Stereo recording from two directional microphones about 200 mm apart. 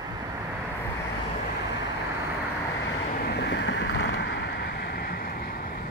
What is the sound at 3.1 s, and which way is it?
Vehicle, 50° left (ahead or behind).